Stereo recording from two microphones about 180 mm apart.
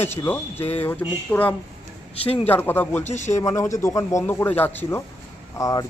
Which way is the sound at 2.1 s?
35° left (ahead or behind).